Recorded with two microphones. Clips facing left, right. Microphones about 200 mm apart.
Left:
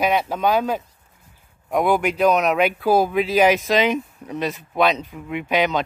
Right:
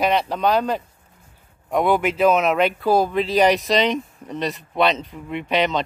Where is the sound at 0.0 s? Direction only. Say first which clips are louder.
Even; centre (ahead or behind).